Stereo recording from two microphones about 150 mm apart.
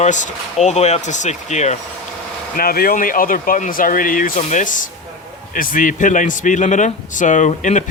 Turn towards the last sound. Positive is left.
turn(degrees=55)  # may be behind; listen again after turning